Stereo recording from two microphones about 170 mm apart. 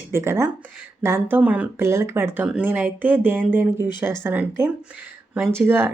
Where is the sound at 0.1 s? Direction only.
15° right (ahead or behind).